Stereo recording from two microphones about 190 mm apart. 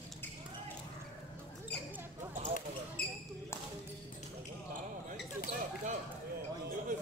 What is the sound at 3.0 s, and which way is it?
Basketball bounce, 55° left (ahead or behind).